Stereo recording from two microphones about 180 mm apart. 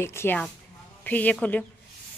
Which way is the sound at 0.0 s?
15° left (ahead or behind).